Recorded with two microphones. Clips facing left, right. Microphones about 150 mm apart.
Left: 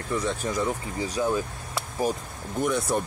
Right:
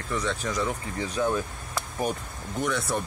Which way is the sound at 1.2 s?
5° left (ahead or behind).